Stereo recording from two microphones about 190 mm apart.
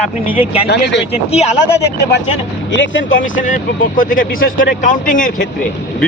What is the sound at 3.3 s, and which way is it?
Speech, 40° left (ahead or behind).